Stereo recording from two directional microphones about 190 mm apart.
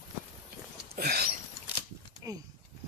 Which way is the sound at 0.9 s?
55° right (ahead or behind).